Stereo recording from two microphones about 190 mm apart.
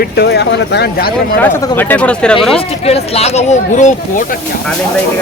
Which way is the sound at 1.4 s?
10° left (ahead or behind).